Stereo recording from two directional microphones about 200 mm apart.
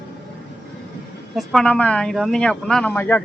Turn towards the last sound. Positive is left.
turn(degrees=10)  # may be behind; listen again after turning